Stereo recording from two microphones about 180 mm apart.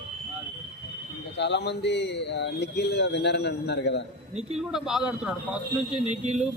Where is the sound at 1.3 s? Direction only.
75° left (ahead or behind).